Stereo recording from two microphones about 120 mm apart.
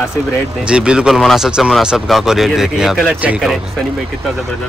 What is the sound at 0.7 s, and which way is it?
Speech, 10° right (ahead or behind).